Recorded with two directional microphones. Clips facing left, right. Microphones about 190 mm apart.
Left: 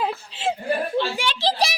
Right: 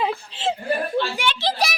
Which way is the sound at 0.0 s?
5° left (ahead or behind).